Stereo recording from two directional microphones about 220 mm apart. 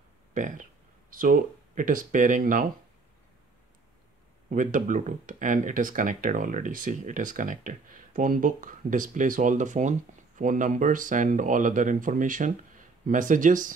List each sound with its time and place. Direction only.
0.3 s speech: 35° right (ahead or behind)
4.5 s speech: 35° right (ahead or behind)